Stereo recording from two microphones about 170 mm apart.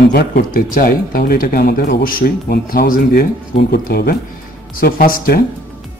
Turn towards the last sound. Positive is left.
turn(degrees=60)  # may be behind; listen again after turning